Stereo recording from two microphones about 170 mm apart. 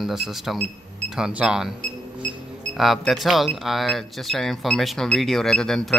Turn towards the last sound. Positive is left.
turn(degrees=5)  # may be behind; listen again after turning